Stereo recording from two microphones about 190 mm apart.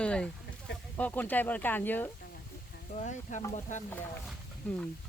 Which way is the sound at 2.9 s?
40° left (ahead or behind).